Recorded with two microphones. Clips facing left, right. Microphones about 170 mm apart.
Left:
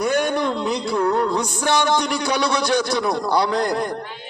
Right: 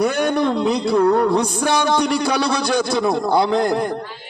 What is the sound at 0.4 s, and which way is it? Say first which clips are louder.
A man's voice: right 4 dB; 30° right (ahead or behind).